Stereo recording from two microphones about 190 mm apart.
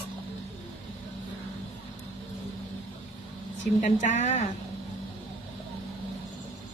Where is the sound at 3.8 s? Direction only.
40° left (ahead or behind).